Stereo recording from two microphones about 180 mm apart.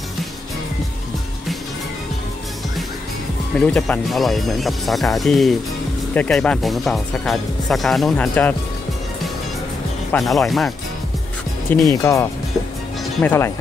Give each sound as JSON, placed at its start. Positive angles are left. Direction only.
{"t": 3.5, "sound": "speech", "side_deg": 5}
{"t": 10.1, "sound": "speech", "side_deg": 0}
{"t": 11.9, "sound": "speech", "side_deg": 15}